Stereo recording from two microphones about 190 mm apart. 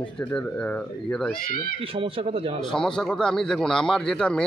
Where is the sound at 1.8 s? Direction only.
30° right (ahead or behind).